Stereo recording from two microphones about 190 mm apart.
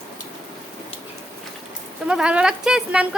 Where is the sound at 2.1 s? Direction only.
5° right (ahead or behind).